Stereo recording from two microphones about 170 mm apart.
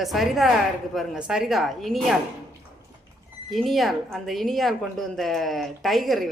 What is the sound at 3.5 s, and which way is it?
A woman's voice, centre (ahead or behind).